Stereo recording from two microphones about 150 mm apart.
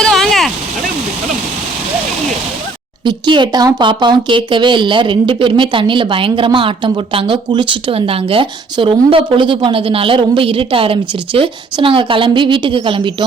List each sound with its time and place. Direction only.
0.0 s vehicle: centre (ahead or behind)
3.0 s speech: 30° right (ahead or behind)